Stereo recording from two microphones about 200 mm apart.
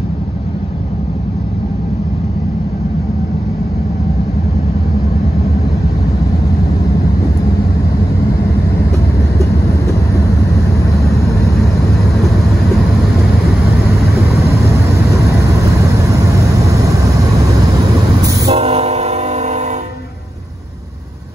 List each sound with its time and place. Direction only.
18.5 s train: 30° right (ahead or behind)